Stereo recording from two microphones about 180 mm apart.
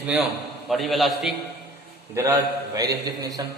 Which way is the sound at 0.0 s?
5° right (ahead or behind).